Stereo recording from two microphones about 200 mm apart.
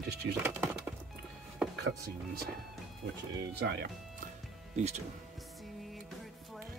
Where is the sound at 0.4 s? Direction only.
10° right (ahead or behind).